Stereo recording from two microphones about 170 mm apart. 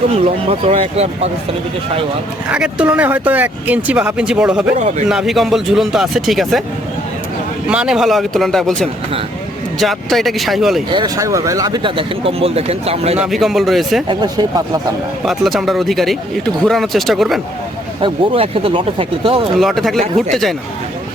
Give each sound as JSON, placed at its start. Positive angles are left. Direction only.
{"t": 0.1, "sound": "speech", "side_deg": -35}
{"t": 2.5, "sound": "speech", "side_deg": -5}
{"t": 4.7, "sound": "speech", "side_deg": -40}
{"t": 5.0, "sound": "speech", "side_deg": 0}
{"t": 7.7, "sound": "speech", "side_deg": -5}
{"t": 10.8, "sound": "speech", "side_deg": -25}
{"t": 13.1, "sound": "speech", "side_deg": 0}
{"t": 14.1, "sound": "speech", "side_deg": -25}
{"t": 15.2, "sound": "speech", "side_deg": 0}
{"t": 18.0, "sound": "speech", "side_deg": -30}
{"t": 19.5, "sound": "speech", "side_deg": 0}